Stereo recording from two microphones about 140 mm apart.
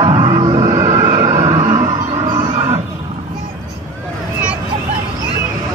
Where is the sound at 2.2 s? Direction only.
30° right (ahead or behind).